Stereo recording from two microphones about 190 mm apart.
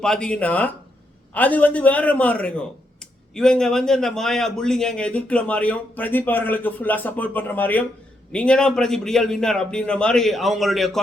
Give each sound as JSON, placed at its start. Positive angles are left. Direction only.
{"t": 0.0, "sound": "a man's voice", "side_deg": 5}